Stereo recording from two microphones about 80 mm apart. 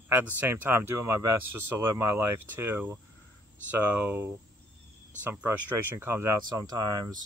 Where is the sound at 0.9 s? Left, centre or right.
Right.